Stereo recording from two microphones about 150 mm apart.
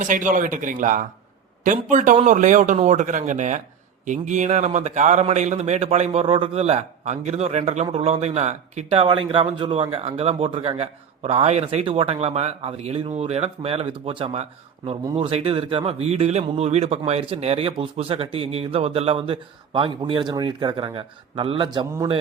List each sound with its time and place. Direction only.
0.0 s a man's voice: 60° right (ahead or behind); by 21.8 s 30° right (ahead or behind)